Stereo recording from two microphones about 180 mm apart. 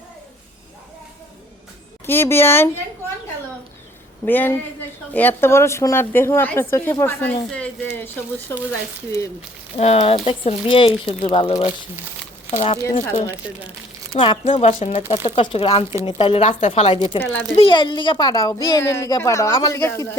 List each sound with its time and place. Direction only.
2.0 s speech: 15° left (ahead or behind)
4.3 s speech: 10° left (ahead or behind)
9.7 s speech: 35° left (ahead or behind)
12.7 s speech: 20° left (ahead or behind)
14.1 s speech: 30° left (ahead or behind); by 20.1 s 15° left (ahead or behind)